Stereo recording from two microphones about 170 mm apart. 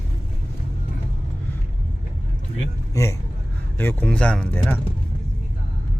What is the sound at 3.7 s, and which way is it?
Speech, 10° left (ahead or behind).